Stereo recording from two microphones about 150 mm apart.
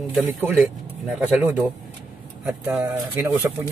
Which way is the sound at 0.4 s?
10° right (ahead or behind).